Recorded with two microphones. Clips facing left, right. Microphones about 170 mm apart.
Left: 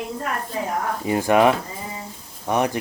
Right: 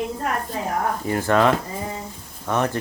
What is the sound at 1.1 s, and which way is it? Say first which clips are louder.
Speech: left 2 dB; 15° left (ahead or behind).